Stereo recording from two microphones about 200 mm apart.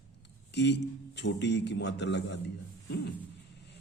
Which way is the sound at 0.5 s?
60° left (ahead or behind).